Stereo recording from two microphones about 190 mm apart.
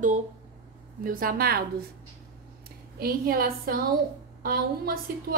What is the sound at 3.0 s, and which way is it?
A woman's voice, 50° right (ahead or behind).